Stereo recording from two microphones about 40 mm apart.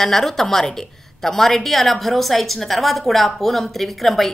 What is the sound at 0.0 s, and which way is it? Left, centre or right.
A woman's voice, centre.